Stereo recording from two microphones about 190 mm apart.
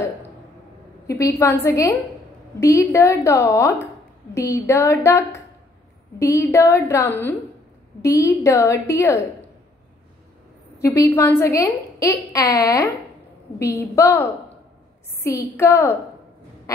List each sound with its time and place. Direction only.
1.0 s a woman's voice: 15° left (ahead or behind)
10.8 s a woman's voice: 15° left (ahead or behind)
13.9 s a woman's voice: 15° left (ahead or behind)
15.5 s a woman's voice: 15° left (ahead or behind)